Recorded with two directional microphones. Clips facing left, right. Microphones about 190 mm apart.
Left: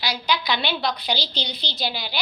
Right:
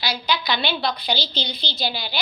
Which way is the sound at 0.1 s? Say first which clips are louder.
Even; 5° right (ahead or behind).